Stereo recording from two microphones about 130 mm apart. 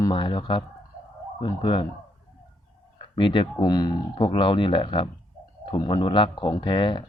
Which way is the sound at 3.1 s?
40° left (ahead or behind).